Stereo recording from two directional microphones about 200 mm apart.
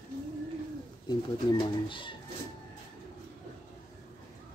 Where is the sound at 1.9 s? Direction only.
25° left (ahead or behind).